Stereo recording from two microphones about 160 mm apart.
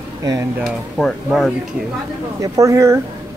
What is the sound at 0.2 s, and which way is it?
Speech, 20° right (ahead or behind).